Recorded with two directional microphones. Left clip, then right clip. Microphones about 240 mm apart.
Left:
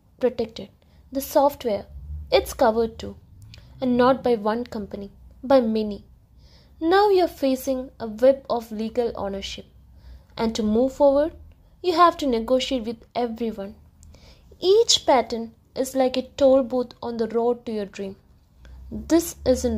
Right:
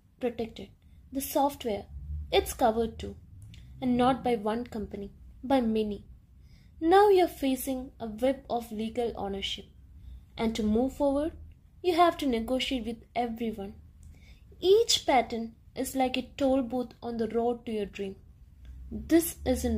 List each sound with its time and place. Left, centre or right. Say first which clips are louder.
0.2 s a woman's voice: left 9 dB; left